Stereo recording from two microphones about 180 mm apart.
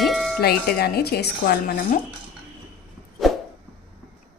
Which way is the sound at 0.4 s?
60° left (ahead or behind).